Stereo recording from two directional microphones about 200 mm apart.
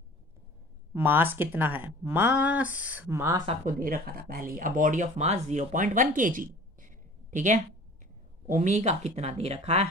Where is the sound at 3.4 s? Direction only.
45° right (ahead or behind).